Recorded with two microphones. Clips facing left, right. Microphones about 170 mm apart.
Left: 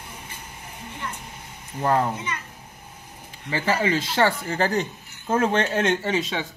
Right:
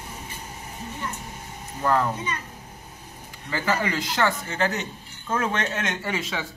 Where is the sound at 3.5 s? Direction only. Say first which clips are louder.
Left 3 dB; 25° left (ahead or behind).